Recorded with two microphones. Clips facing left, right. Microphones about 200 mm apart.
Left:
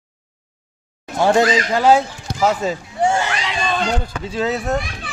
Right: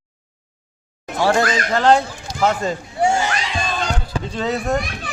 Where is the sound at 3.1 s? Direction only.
60° left (ahead or behind).